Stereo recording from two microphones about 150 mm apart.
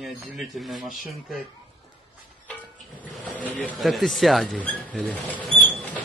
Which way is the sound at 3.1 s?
10° left (ahead or behind).